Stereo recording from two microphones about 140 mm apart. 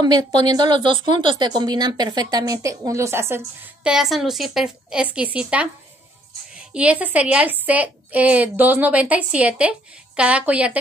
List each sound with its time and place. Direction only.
0.0 s a woman's voice: 30° right (ahead or behind); by 5.7 s 10° right (ahead or behind)
6.7 s a woman's voice: 10° right (ahead or behind)